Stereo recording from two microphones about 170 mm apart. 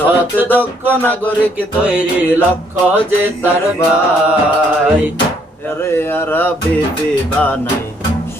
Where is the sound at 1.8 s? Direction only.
10° right (ahead or behind).